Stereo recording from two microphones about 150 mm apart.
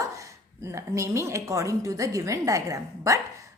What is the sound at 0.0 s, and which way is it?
A woman's voice, 20° right (ahead or behind).